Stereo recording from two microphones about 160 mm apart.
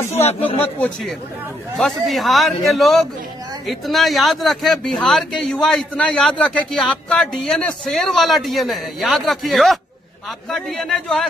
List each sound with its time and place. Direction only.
0.2 s speech: 40° left (ahead or behind)
0.7 s a man's voice: 5° left (ahead or behind)